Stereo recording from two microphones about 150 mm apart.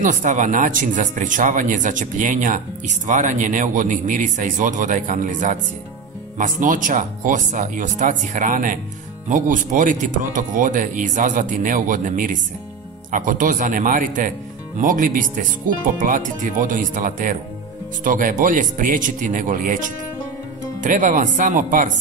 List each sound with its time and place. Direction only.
0.0 s speech: 55° right (ahead or behind)